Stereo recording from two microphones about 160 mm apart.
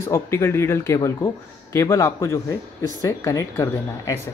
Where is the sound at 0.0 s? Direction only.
15° left (ahead or behind).